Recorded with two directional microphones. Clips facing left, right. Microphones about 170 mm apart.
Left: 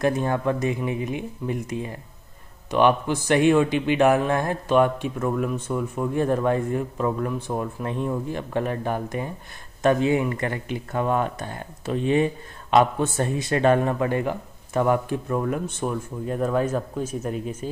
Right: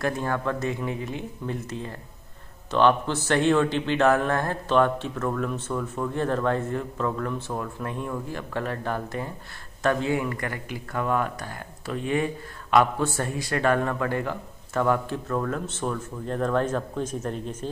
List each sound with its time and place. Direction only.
0.0 s speech: 20° left (ahead or behind)